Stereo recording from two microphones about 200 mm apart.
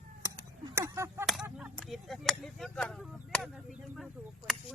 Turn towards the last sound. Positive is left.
turn(degrees=0)  # may be behind; listen again after turning